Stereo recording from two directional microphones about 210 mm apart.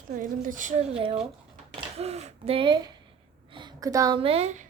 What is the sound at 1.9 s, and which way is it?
A woman's voice, 30° right (ahead or behind).